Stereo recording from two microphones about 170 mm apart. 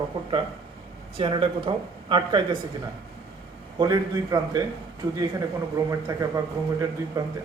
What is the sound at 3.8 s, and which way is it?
A man's voice, 20° right (ahead or behind).